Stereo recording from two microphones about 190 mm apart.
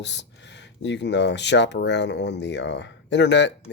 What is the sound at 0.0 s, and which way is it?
Speech, 65° left (ahead or behind).